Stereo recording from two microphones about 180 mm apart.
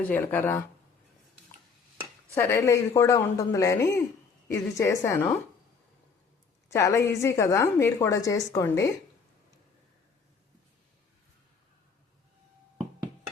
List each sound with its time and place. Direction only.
0.0 s speech: 10° left (ahead or behind)
2.3 s speech: 15° left (ahead or behind)
6.7 s speech: 15° left (ahead or behind)